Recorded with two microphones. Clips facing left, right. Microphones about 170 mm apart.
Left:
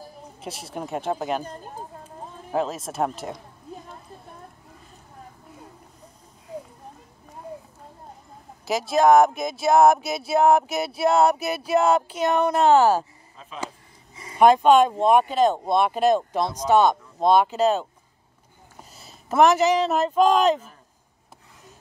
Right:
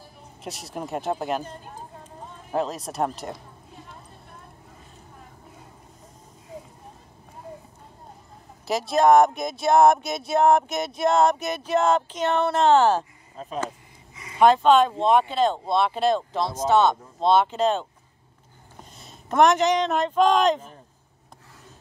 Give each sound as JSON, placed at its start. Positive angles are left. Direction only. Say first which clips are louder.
{"t": 0.4, "sound": "speech", "louder": "even", "side_deg": 0}
{"t": 1.4, "sound": "speech", "louder": "left 2 dB", "side_deg": 40}
{"t": 2.5, "sound": "speech", "louder": "left 1 dB", "side_deg": 0}
{"t": 8.6, "sound": "speech", "louder": "left 1 dB", "side_deg": 0}
{"t": 13.4, "sound": "speech", "louder": "right 9 dB", "side_deg": -40}
{"t": 14.4, "sound": "speech", "louder": "left 1 dB", "side_deg": 10}